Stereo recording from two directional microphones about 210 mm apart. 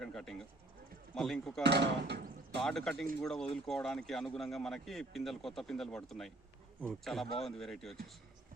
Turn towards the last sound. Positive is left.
turn(degrees=0)  # may be behind; listen again after turning